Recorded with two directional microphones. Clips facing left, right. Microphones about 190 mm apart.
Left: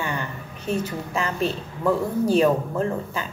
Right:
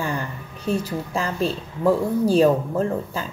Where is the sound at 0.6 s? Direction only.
35° right (ahead or behind).